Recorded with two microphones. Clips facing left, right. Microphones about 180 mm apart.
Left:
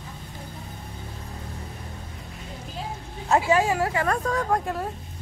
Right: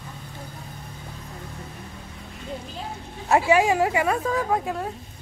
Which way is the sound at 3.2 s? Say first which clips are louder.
Right 2 dB; 10° right (ahead or behind).